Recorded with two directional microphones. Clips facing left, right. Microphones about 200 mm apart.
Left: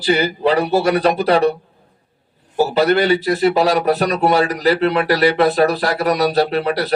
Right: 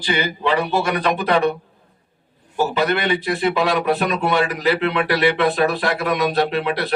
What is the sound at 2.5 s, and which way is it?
A man's voice, 35° left (ahead or behind).